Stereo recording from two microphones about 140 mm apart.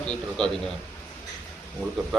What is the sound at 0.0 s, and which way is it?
Speech, 5° left (ahead or behind).